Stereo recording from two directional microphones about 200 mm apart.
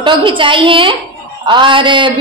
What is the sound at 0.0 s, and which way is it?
A woman's voice, 25° right (ahead or behind).